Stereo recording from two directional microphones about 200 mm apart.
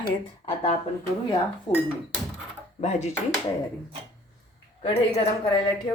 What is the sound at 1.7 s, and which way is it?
Speech, 20° left (ahead or behind).